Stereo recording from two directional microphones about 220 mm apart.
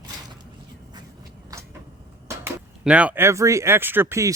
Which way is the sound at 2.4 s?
5° right (ahead or behind).